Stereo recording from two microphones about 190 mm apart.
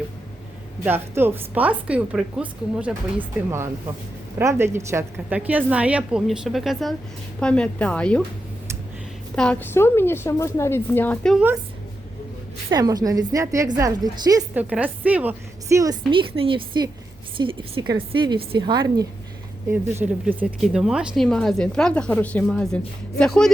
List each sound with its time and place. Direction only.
0.9 s a woman's voice: 10° right (ahead or behind); by 8.2 s 5° left (ahead or behind)
9.3 s a woman's voice: 5° left (ahead or behind)
12.7 s a woman's voice: 20° right (ahead or behind)
14.5 s a woman's voice: 10° right (ahead or behind)
19.6 s a woman's voice: 10° right (ahead or behind); by 23.5 s 5° left (ahead or behind)